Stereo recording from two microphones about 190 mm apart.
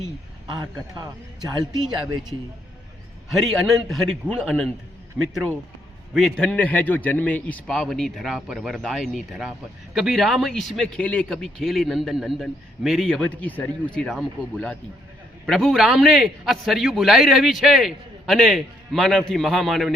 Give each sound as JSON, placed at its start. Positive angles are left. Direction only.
{"t": 0.5, "sound": "a man's voice", "side_deg": -20}
{"t": 3.3, "sound": "a man's voice", "side_deg": 0}